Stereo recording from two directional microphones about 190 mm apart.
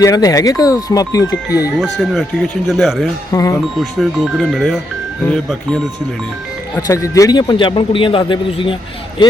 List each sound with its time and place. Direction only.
0.0 s a man's voice: 20° left (ahead or behind)
1.7 s speech: centre (ahead or behind)
3.3 s speech: 15° left (ahead or behind)
3.8 s speech: centre (ahead or behind)
6.7 s a man's voice: 15° left (ahead or behind)